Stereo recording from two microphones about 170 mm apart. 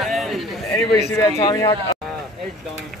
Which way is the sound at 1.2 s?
25° left (ahead or behind).